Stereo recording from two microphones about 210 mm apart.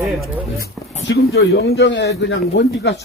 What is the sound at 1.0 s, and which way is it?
Speech, 50° left (ahead or behind).